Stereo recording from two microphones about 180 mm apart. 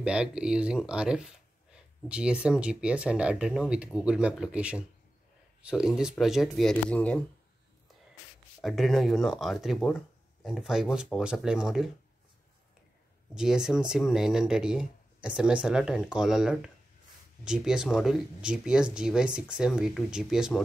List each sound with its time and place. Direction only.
0.0 s speech: 5° right (ahead or behind)
8.5 s speech: centre (ahead or behind)
13.3 s speech: 5° right (ahead or behind)